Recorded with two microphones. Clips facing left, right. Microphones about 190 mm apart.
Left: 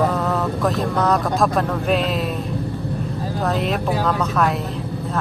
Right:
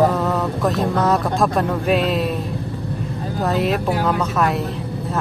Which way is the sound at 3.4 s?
Centre (ahead or behind).